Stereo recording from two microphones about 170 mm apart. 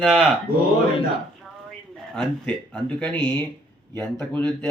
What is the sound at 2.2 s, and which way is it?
Speech, 5° left (ahead or behind).